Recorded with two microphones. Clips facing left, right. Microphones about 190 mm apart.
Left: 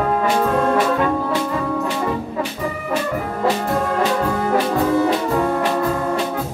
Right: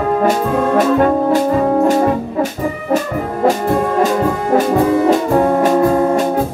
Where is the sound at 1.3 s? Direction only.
45° right (ahead or behind).